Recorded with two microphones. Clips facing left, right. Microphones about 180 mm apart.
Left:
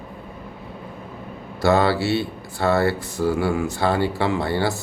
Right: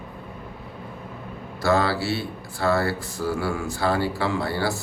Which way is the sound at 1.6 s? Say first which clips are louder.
Left 4 dB; 25° left (ahead or behind).